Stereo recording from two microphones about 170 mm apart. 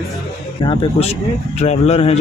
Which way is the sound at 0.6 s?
30° left (ahead or behind).